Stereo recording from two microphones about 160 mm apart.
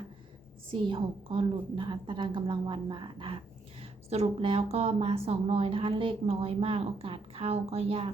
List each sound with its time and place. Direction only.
0.7 s a woman's voice: 35° right (ahead or behind)